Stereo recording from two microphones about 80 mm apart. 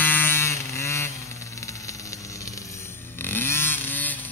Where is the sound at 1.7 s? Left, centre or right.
Left.